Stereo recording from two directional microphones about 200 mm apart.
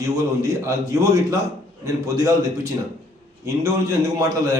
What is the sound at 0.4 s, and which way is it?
Speech, 15° right (ahead or behind).